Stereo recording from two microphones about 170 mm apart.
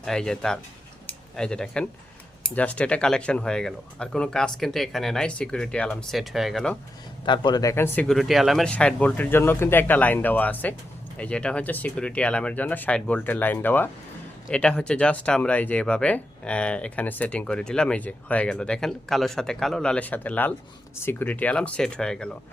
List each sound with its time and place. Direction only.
0.0 s speech: 5° left (ahead or behind)
7.3 s speech: 25° left (ahead or behind)
8.0 s speech: centre (ahead or behind)